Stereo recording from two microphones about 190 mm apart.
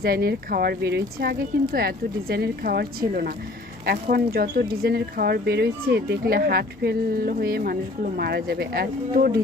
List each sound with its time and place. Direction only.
0.0 s speech: 55° right (ahead or behind)